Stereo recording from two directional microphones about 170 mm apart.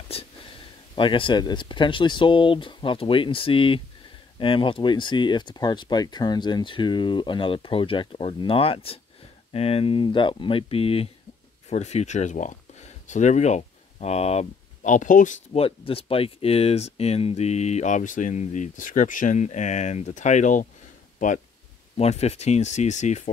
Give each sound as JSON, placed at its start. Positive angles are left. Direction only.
{"t": 0.1, "sound": "a sound", "side_deg": 35}
{"t": 0.9, "sound": "speech", "side_deg": 30}
{"t": 15.5, "sound": "speech", "side_deg": 35}
{"t": 21.9, "sound": "speech", "side_deg": 40}